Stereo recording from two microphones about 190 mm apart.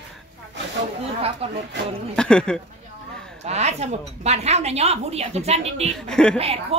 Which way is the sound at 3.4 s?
35° right (ahead or behind).